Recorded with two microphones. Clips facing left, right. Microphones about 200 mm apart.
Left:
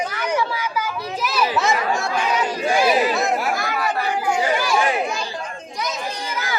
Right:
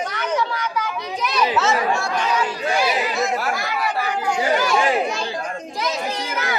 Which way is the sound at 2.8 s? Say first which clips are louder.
Left 4 dB; 50° left (ahead or behind).